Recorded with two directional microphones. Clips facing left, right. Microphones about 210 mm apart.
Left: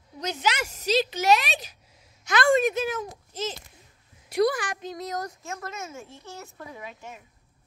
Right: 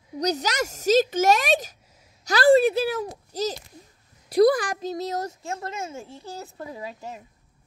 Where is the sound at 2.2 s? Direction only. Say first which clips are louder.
Right 5 dB; 35° right (ahead or behind).